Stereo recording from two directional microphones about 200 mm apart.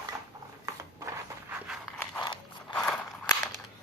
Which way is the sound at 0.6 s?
15° right (ahead or behind).